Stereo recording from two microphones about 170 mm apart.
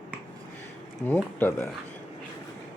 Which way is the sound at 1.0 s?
15° left (ahead or behind).